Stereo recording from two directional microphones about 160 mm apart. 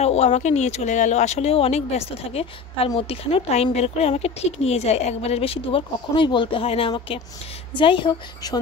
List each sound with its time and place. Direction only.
0.0 s speech: 40° left (ahead or behind)